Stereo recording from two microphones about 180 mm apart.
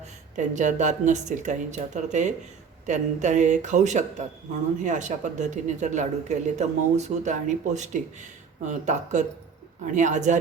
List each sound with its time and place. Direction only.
0.3 s speech: 40° right (ahead or behind)